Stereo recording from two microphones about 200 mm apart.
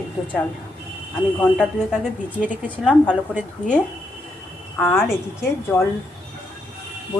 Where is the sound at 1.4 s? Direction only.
Centre (ahead or behind).